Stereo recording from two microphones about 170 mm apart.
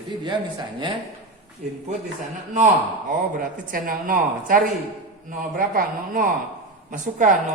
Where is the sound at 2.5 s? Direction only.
50° right (ahead or behind).